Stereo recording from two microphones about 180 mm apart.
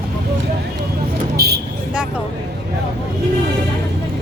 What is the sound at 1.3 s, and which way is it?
Speech, 60° right (ahead or behind).